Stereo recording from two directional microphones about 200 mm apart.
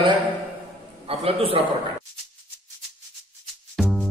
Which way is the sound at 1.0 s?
30° right (ahead or behind).